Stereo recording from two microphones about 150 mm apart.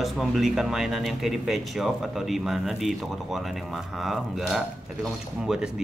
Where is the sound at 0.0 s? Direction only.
Centre (ahead or behind).